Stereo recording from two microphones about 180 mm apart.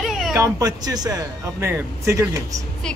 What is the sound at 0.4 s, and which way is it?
Speech, 20° right (ahead or behind).